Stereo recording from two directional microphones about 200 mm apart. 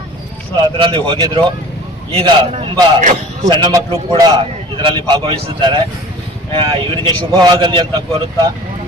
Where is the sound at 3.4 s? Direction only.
20° right (ahead or behind).